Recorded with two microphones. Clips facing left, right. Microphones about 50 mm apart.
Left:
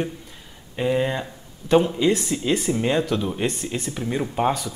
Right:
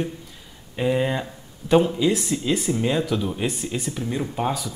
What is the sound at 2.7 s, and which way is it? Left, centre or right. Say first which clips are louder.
Speech: left 1 dB; centre.